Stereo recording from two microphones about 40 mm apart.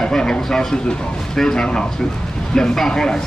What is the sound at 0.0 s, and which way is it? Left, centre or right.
Speech, centre.